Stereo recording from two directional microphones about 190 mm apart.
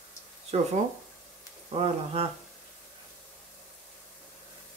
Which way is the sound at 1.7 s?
30° right (ahead or behind).